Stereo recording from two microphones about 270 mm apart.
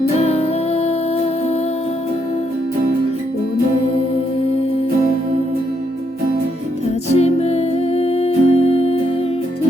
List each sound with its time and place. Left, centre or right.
0.2 s music: left
7.1 s music: left